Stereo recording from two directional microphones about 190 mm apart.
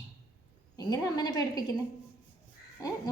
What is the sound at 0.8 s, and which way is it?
Speech, 20° left (ahead or behind).